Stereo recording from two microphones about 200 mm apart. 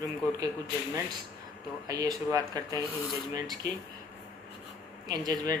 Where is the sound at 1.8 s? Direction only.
15° right (ahead or behind).